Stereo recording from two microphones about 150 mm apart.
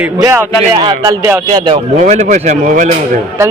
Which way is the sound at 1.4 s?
30° right (ahead or behind).